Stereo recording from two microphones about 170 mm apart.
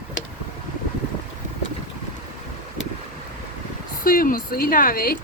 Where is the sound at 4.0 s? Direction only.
55° left (ahead or behind).